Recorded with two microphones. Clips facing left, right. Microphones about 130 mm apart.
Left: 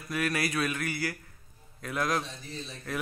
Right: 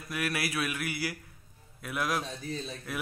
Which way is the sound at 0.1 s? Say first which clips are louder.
Left 3 dB; 5° right (ahead or behind).